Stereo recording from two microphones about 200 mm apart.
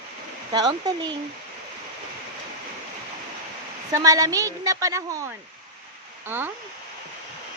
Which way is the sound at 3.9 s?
15° right (ahead or behind).